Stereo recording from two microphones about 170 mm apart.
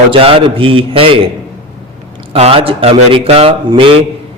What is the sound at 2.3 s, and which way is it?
A man's voice, 35° right (ahead or behind).